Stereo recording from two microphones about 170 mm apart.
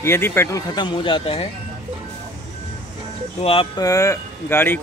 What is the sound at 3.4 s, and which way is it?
Speech, 30° left (ahead or behind).